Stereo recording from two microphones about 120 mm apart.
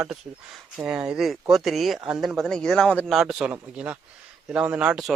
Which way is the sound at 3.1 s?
5° right (ahead or behind).